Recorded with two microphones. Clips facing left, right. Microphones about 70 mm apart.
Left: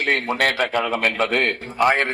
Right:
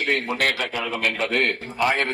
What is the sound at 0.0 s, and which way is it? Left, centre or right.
A man's voice, left.